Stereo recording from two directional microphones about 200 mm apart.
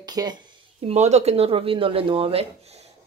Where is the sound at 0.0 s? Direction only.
20° right (ahead or behind).